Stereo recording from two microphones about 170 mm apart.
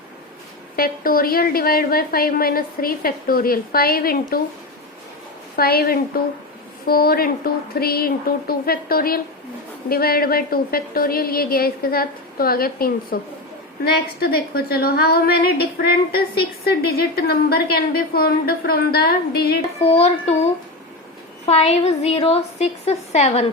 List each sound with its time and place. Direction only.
0.8 s a woman's voice: 60° left (ahead or behind)
5.5 s a woman's voice: 65° left (ahead or behind)
19.8 s a woman's voice: 40° left (ahead or behind)